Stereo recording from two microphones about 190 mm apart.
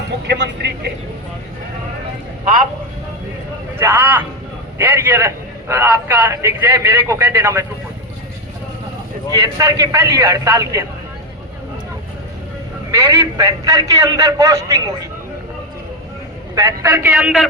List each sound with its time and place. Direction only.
0.3 s speech: 65° right (ahead or behind)
3.8 s a man's voice: 15° right (ahead or behind)
9.3 s a man's voice: 15° right (ahead or behind)
12.9 s a man's voice: 15° right (ahead or behind)
16.6 s a man's voice: 10° right (ahead or behind)